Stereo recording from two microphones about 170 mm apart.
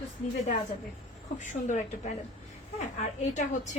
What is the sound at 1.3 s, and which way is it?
A woman's voice, 45° left (ahead or behind).